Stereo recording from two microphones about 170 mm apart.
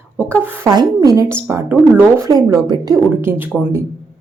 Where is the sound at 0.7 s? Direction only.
20° right (ahead or behind).